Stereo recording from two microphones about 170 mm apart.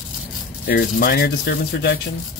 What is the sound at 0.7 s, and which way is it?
Speech, 60° left (ahead or behind).